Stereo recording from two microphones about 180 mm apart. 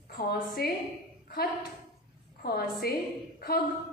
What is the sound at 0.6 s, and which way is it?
Speech, 55° left (ahead or behind).